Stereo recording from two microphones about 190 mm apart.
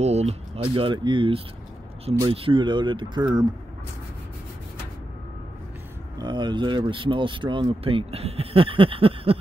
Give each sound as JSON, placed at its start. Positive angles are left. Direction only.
{"t": 0.0, "sound": "speech", "side_deg": -35}
{"t": 6.1, "sound": "speech", "side_deg": -25}